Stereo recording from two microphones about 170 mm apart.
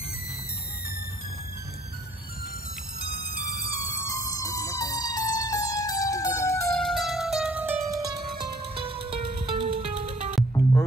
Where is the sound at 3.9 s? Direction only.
20° left (ahead or behind).